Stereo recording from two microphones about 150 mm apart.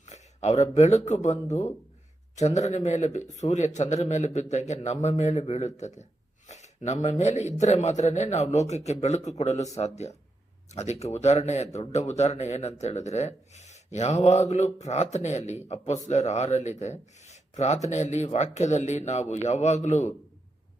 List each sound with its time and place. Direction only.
0.0 s a man's voice: 50° left (ahead or behind)